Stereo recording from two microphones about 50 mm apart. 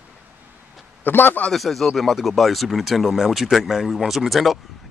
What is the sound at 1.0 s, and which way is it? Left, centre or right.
Speech, left.